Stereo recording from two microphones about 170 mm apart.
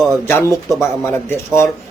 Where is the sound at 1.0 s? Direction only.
15° left (ahead or behind).